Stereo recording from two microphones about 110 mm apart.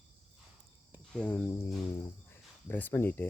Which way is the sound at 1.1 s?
10° left (ahead or behind).